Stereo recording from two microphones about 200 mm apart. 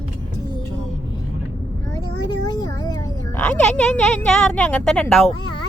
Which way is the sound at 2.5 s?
20° left (ahead or behind).